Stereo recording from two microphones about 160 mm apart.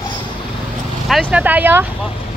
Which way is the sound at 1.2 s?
10° right (ahead or behind).